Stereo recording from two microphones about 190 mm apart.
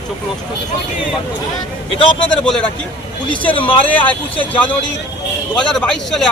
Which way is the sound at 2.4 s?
5° left (ahead or behind).